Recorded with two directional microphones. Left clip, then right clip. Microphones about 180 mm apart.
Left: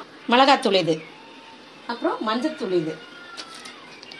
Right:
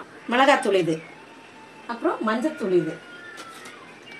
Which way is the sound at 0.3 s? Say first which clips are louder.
Left 2 dB; 40° left (ahead or behind).